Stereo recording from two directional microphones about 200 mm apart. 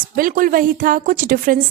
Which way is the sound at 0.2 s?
45° right (ahead or behind).